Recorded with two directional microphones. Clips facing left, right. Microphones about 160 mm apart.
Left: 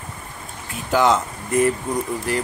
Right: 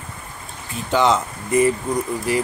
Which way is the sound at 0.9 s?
5° left (ahead or behind).